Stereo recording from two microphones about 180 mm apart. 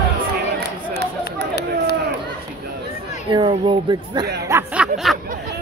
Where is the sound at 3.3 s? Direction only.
25° right (ahead or behind).